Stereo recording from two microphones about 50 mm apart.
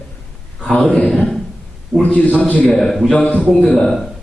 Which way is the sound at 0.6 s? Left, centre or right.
Left.